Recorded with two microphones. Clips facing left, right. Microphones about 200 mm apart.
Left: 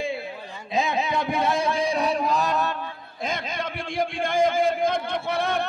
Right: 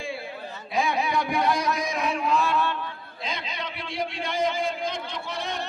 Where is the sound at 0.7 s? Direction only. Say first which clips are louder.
Left 1 dB; 20° left (ahead or behind).